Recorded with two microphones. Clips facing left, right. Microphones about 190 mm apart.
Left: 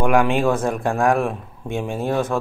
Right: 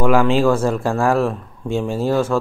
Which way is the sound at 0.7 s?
15° left (ahead or behind).